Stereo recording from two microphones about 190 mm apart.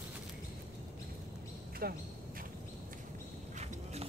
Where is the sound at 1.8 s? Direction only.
50° right (ahead or behind).